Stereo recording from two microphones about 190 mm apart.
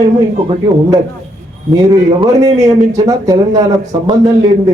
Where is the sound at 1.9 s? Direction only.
25° right (ahead or behind).